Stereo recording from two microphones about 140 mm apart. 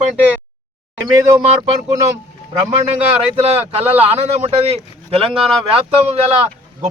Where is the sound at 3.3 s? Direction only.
45° right (ahead or behind).